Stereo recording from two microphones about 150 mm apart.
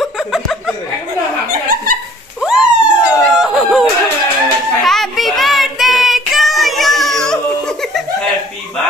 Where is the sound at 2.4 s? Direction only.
5° right (ahead or behind).